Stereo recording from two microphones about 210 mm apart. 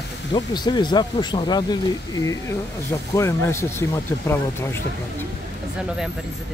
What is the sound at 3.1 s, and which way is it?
Speech, 15° left (ahead or behind).